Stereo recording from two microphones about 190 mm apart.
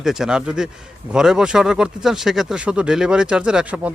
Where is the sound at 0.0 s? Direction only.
5° right (ahead or behind).